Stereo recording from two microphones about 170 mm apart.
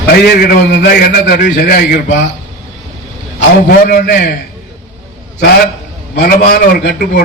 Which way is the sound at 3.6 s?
60° left (ahead or behind).